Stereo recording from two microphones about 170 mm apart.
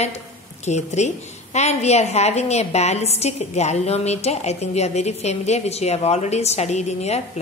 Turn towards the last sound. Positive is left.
turn(degrees=40)  # may be behind; listen again after turning